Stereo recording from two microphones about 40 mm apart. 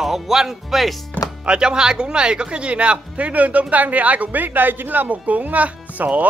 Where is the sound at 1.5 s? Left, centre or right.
Right.